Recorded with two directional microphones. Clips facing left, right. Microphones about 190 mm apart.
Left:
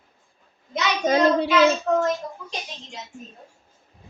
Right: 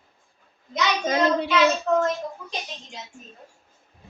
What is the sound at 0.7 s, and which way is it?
Child singing, 35° left (ahead or behind).